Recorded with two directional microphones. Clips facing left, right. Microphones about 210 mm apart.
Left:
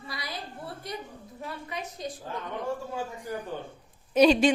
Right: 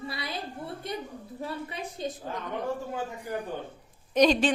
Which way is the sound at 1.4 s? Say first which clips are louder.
Right 2 dB; 30° right (ahead or behind).